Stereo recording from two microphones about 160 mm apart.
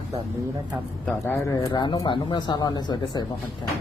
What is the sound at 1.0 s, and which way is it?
Speech, 15° left (ahead or behind).